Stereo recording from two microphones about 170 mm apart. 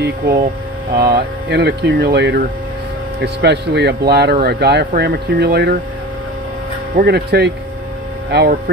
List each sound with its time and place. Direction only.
0.9 s speech: 70° right (ahead or behind)
7.0 s speech: 70° right (ahead or behind)